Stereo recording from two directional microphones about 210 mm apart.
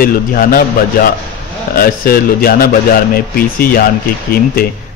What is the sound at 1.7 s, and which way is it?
A man's voice, 45° left (ahead or behind).